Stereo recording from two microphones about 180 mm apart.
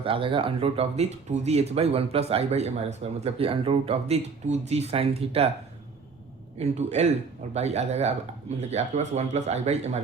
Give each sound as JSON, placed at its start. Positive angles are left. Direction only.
{"t": 0.0, "sound": "speech", "side_deg": -30}
{"t": 6.6, "sound": "speech", "side_deg": -40}